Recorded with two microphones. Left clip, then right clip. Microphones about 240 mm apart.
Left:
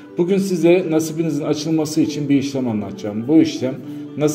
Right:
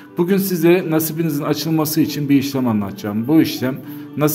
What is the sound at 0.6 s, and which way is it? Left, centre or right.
Speech, right.